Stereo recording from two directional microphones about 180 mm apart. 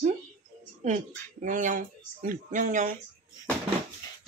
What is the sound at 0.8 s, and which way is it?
A child's voice, 40° right (ahead or behind).